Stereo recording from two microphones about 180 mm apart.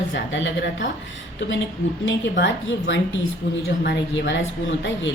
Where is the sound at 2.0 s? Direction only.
85° left.